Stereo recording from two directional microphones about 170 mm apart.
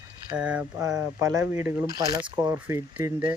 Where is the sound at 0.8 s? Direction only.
20° right (ahead or behind).